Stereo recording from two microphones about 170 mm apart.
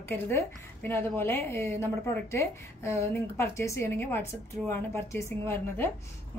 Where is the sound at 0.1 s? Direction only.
15° left (ahead or behind).